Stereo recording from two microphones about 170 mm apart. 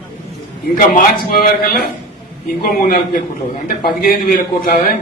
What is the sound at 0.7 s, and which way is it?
A man's voice, 60° left (ahead or behind).